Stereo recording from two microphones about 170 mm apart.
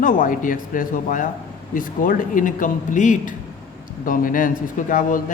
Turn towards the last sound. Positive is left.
turn(degrees=50)  # may be behind; listen again after turning